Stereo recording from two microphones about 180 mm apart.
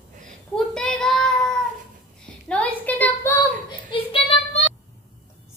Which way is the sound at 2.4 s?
10° left (ahead or behind).